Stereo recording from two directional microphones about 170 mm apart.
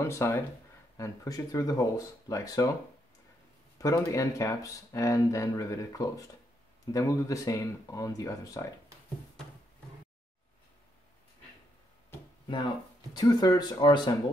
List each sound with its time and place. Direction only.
0.0 s speech: 15° left (ahead or behind)
3.7 s speech: 20° left (ahead or behind)
12.4 s speech: 25° left (ahead or behind)